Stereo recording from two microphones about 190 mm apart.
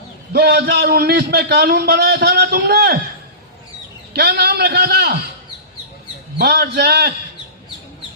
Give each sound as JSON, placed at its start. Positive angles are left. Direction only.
{"t": 0.3, "sound": "a man's voice", "side_deg": -60}
{"t": 4.1, "sound": "a man's voice", "side_deg": -60}
{"t": 6.4, "sound": "a man's voice", "side_deg": -55}